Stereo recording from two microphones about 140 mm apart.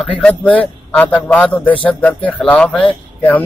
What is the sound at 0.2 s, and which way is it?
A man's voice, 10° left (ahead or behind).